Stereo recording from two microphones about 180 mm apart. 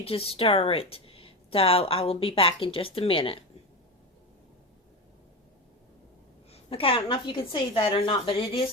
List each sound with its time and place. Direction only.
0.0 s speech: 30° left (ahead or behind)
6.5 s speech: 30° left (ahead or behind)